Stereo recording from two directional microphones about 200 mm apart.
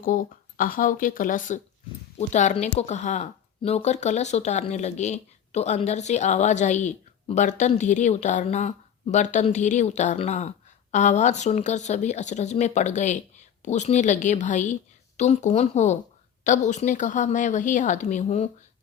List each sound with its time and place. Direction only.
0.0 s speech: 45° left (ahead or behind)